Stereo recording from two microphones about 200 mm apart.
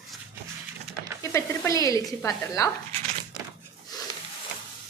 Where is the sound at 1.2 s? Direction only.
15° left (ahead or behind).